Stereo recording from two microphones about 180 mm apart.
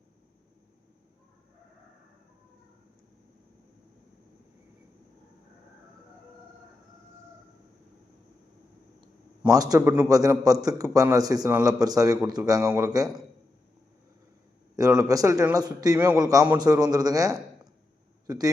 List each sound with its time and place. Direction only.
9.5 s a man's voice: 20° right (ahead or behind)
14.8 s a man's voice: 20° right (ahead or behind)